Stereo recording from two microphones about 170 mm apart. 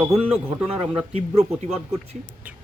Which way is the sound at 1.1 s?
40° right (ahead or behind).